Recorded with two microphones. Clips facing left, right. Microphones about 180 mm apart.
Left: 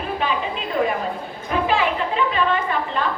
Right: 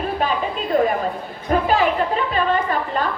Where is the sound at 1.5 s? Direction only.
40° right (ahead or behind).